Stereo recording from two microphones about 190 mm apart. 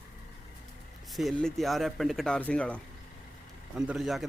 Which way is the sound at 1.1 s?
Centre (ahead or behind).